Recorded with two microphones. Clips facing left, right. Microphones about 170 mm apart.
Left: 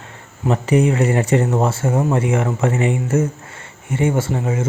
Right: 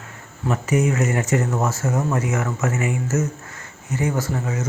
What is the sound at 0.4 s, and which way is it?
Speech, 30° left (ahead or behind).